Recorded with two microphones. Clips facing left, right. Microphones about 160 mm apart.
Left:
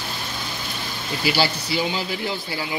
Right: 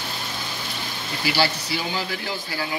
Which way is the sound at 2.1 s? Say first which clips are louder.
Left 3 dB; 20° left (ahead or behind).